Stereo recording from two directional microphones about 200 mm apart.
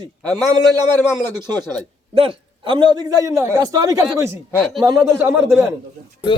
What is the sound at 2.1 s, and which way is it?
A man's voice, 25° right (ahead or behind).